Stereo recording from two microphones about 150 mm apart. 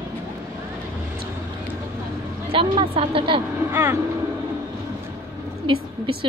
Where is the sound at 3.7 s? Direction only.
15° right (ahead or behind).